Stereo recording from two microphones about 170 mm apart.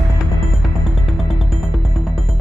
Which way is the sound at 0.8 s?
Centre (ahead or behind).